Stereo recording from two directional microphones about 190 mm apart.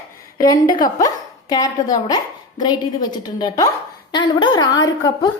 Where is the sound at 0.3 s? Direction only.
20° left (ahead or behind).